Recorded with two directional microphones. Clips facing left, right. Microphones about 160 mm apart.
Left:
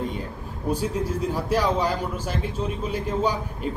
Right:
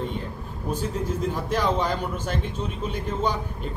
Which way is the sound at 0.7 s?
10° left (ahead or behind).